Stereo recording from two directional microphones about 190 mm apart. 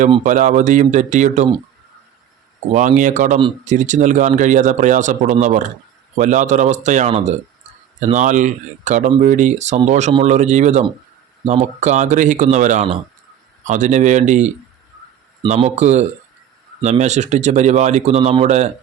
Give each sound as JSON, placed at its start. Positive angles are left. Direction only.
{"t": 0.3, "sound": "a man's voice", "side_deg": -40}
{"t": 2.7, "sound": "a man's voice", "side_deg": -40}